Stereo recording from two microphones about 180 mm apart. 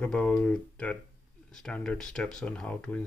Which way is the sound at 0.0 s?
5° left (ahead or behind).